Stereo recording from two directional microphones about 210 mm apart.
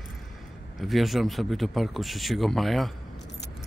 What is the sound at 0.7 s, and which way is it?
Speech, centre (ahead or behind).